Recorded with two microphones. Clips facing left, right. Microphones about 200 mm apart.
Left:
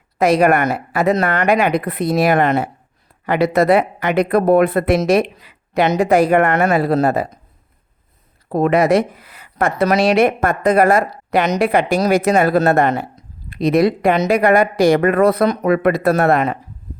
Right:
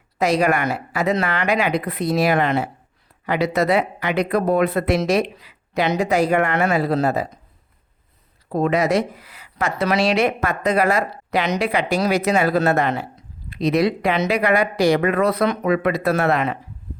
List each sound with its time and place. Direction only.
0.2 s speech: 55° left (ahead or behind)
8.4 s speech: 60° left (ahead or behind)